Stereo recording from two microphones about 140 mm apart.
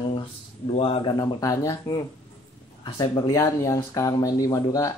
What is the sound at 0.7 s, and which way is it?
Speech, 40° left (ahead or behind).